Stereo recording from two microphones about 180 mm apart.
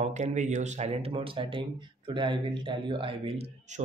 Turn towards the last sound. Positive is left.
turn(degrees=-35)  # may be behind; listen again after turning